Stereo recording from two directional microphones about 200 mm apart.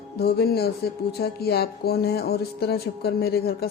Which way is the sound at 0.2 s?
50° left (ahead or behind).